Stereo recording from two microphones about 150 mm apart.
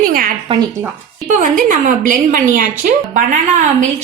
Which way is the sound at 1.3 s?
60° right (ahead or behind).